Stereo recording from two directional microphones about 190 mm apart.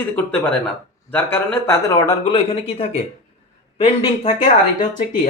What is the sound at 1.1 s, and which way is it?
Speech, 10° left (ahead or behind).